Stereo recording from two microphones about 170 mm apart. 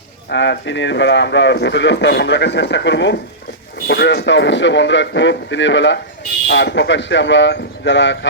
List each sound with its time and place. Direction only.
0.3 s speech: 90° left
3.8 s speech: 80° left